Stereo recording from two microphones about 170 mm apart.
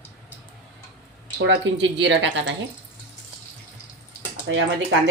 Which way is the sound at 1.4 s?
90° right.